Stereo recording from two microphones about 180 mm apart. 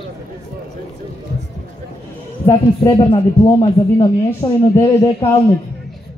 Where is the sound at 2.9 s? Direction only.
30° left (ahead or behind).